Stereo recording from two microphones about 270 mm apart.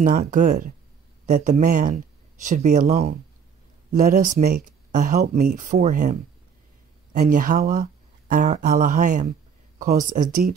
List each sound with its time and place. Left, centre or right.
0.0 s speech: right